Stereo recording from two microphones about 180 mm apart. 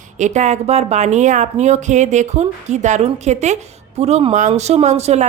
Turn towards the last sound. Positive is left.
turn(degrees=-40)  # may be behind; listen again after turning